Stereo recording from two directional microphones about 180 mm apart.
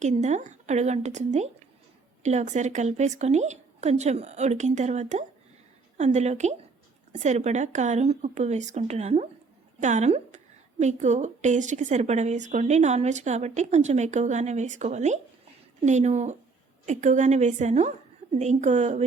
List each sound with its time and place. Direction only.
0.0 s a woman's voice: 40° right (ahead or behind)